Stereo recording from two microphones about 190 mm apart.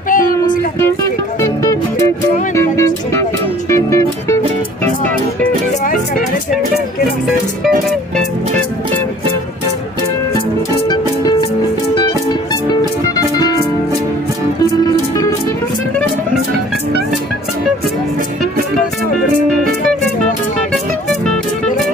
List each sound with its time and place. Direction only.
0.1 s music: 45° left (ahead or behind)
1.6 s music: 15° left (ahead or behind)
11.9 s music: 25° left (ahead or behind)
13.4 s music: 20° left (ahead or behind)